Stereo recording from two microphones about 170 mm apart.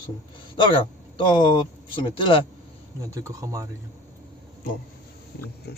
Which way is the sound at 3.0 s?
20° right (ahead or behind).